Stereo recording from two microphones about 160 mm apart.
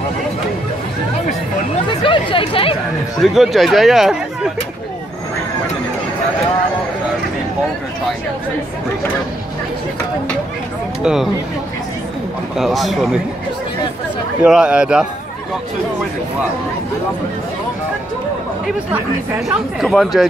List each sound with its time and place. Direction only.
1.9 s speech: 30° left (ahead or behind)
3.2 s speech: centre (ahead or behind)
11.0 s speech: 5° right (ahead or behind)
12.5 s speech: centre (ahead or behind)
14.4 s speech: 5° right (ahead or behind)
19.5 s speech: centre (ahead or behind)